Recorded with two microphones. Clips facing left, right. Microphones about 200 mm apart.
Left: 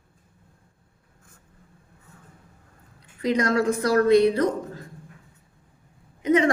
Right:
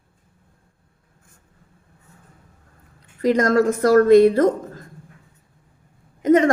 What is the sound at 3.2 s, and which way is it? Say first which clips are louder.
A woman's voice: right 5 dB; 45° right (ahead or behind).